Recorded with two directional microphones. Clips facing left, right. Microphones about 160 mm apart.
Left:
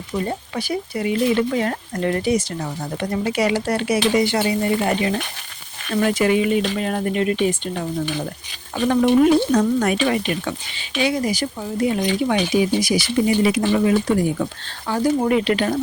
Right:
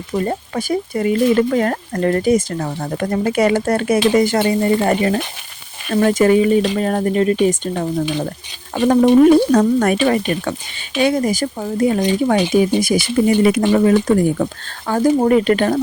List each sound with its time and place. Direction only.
0.1 s speech: 45° right (ahead or behind)